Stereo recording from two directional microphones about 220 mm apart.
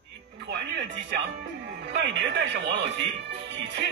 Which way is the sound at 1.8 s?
50° right (ahead or behind).